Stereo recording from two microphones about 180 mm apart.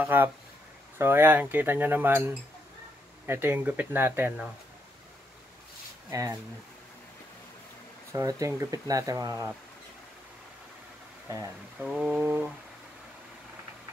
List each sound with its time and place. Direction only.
0.0 s speech: 10° right (ahead or behind)
6.0 s speech: 20° right (ahead or behind)
8.1 s speech: 20° right (ahead or behind)
11.2 s speech: 15° right (ahead or behind)
11.8 s a sound: 5° right (ahead or behind)